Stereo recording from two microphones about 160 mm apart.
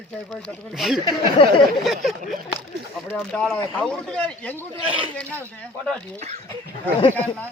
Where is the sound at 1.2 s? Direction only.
30° left (ahead or behind).